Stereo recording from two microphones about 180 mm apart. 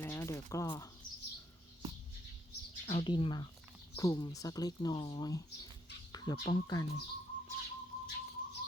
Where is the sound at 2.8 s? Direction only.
30° left (ahead or behind).